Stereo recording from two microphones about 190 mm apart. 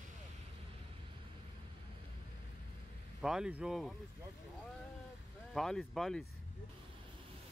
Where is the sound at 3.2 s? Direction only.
5° right (ahead or behind).